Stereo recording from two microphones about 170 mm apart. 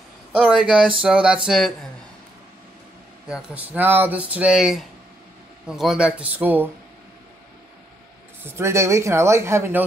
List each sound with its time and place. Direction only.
0.4 s speech: 5° right (ahead or behind)
3.3 s speech: 5° right (ahead or behind)
8.5 s speech: 15° right (ahead or behind)